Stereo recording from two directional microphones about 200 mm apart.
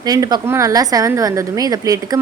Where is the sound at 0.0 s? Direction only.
20° right (ahead or behind).